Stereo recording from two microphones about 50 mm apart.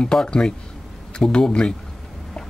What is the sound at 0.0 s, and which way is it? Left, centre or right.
Speech, centre.